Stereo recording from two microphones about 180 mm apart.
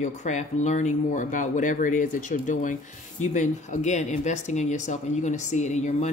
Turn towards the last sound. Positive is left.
turn(degrees=40)  # may be behind; listen again after turning